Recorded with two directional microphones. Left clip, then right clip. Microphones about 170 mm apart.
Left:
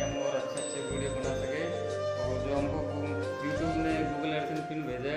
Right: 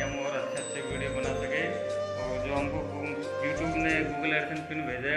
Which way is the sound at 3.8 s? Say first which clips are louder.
Right 3 dB; 20° left (ahead or behind).